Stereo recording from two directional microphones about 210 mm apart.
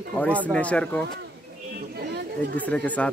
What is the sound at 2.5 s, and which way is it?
Speech, 5° left (ahead or behind).